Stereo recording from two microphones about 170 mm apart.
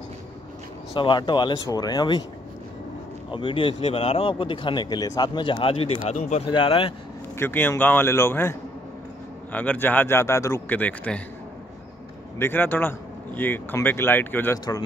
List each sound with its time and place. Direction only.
0.9 s speech: 30° left (ahead or behind)
3.3 s speech: 30° left (ahead or behind)
6.4 s speech: 30° left (ahead or behind)
7.3 s speech: 10° left (ahead or behind)
12.4 s speech: 10° left (ahead or behind)